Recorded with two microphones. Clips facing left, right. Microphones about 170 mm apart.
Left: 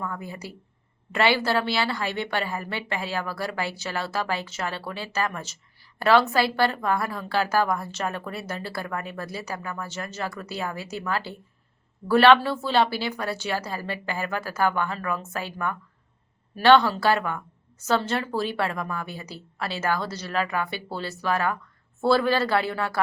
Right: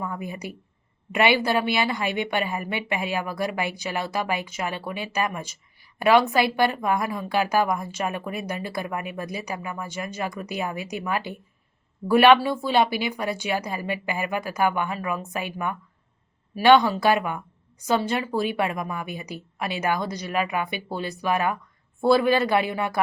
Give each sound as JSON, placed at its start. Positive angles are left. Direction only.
{"t": 0.0, "sound": "a woman's voice", "side_deg": -15}